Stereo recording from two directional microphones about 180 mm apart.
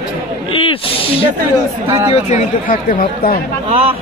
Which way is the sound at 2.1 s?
40° left (ahead or behind).